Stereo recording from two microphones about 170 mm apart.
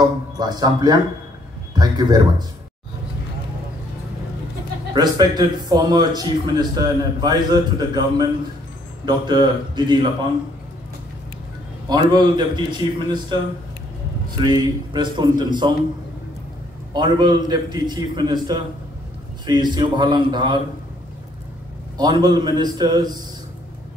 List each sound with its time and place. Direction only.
0.0 s speech: 25° right (ahead or behind)
4.9 s speech: 25° right (ahead or behind)
11.9 s speech: 25° right (ahead or behind)
14.4 s speech: 25° right (ahead or behind)
16.9 s speech: 25° right (ahead or behind)
21.9 s speech: 25° right (ahead or behind)